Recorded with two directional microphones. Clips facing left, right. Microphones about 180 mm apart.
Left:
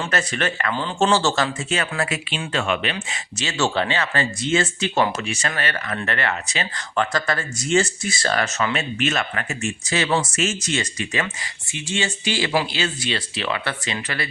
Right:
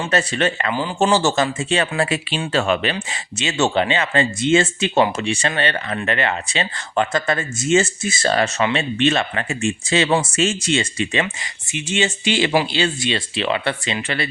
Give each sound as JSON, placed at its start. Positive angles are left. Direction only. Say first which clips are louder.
{"t": 0.0, "sound": "speech", "louder": "right 4 dB", "side_deg": -30}
{"t": 0.7, "sound": "speech", "louder": "even", "side_deg": -10}
{"t": 1.7, "sound": "speech", "louder": "right 5 dB", "side_deg": -30}
{"t": 3.4, "sound": "speech", "louder": "right 4 dB", "side_deg": -20}